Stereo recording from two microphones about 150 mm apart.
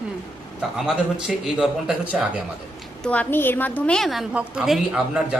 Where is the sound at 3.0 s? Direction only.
10° left (ahead or behind).